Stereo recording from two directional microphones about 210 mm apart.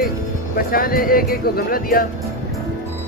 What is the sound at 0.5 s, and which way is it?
Speech, 45° left (ahead or behind).